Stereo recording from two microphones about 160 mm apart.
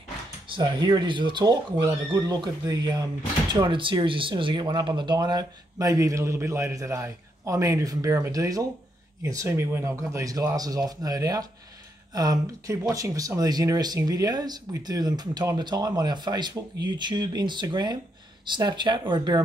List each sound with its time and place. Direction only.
0.5 s speech: 30° right (ahead or behind)